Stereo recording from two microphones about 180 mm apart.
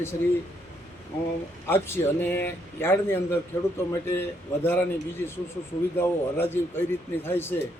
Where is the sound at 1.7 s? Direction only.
15° left (ahead or behind).